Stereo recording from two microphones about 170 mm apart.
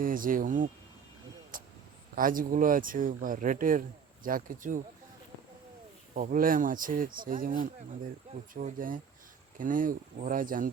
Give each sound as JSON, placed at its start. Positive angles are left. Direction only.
{"t": 0.0, "sound": "speech", "side_deg": -55}
{"t": 6.1, "sound": "speech", "side_deg": -55}